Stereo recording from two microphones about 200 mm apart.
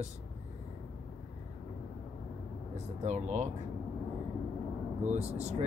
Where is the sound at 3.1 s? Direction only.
35° right (ahead or behind).